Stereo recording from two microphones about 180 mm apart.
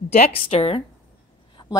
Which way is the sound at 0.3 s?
35° left (ahead or behind).